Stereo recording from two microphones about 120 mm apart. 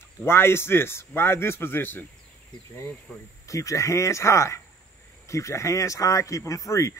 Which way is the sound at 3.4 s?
25° left (ahead or behind).